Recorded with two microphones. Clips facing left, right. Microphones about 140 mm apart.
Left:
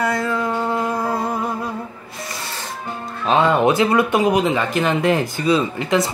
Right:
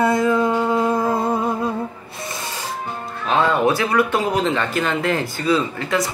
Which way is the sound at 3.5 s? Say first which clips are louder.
Left 3 dB; 20° left (ahead or behind).